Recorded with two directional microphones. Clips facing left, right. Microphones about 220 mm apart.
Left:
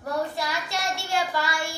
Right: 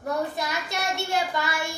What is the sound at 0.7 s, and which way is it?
Child singing, 20° right (ahead or behind).